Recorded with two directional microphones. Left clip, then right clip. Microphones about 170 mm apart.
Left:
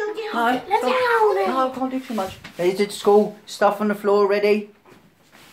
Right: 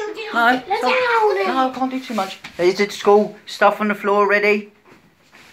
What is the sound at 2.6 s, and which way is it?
Speech, centre (ahead or behind).